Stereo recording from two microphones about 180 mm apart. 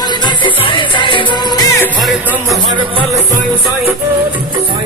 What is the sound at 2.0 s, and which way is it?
Music, centre (ahead or behind).